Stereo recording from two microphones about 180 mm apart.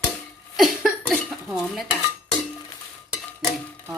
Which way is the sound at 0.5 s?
Centre (ahead or behind).